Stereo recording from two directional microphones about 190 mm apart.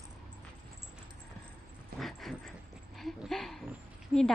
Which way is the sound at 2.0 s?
Centre (ahead or behind).